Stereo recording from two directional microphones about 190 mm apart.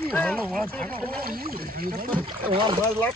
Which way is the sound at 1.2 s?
50° right (ahead or behind).